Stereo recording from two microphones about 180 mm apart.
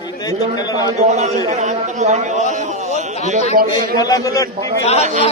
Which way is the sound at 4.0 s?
20° left (ahead or behind).